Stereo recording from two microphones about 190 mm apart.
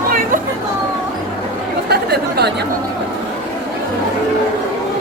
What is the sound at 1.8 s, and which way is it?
Speech, 55° right (ahead or behind).